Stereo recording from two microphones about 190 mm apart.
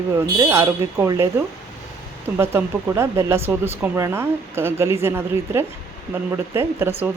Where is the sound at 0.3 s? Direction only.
15° right (ahead or behind).